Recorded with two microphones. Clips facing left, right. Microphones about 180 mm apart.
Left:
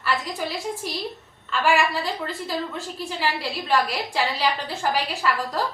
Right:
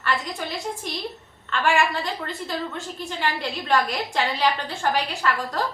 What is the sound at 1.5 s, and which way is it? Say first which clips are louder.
A woman's voice: left 1 dB; 5° left (ahead or behind).